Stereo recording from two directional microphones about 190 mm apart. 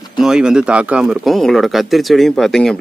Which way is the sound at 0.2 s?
5° right (ahead or behind).